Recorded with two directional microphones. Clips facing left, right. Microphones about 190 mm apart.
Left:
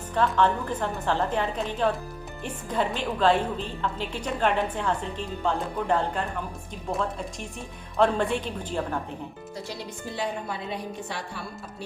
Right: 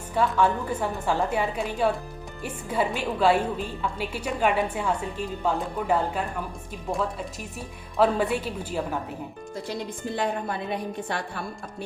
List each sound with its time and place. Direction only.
0.1 s a woman's voice: 10° right (ahead or behind)
10.2 s a woman's voice: 55° right (ahead or behind)